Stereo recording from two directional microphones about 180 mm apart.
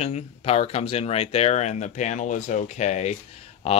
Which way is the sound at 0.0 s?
35° left (ahead or behind).